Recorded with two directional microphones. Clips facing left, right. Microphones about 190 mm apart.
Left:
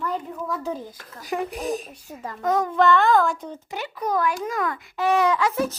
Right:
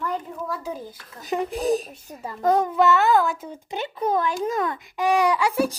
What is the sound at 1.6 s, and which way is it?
Speech, 35° right (ahead or behind).